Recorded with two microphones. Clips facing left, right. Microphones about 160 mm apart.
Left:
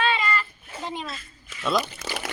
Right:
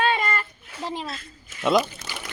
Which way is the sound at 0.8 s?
35° right (ahead or behind).